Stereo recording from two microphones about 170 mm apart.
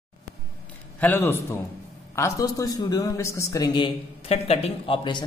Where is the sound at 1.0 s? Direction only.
10° left (ahead or behind).